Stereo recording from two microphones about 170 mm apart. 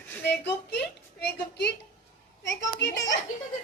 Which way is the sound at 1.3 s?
75° left (ahead or behind).